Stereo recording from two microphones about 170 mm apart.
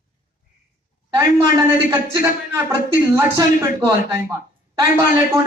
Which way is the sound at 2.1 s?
15° right (ahead or behind).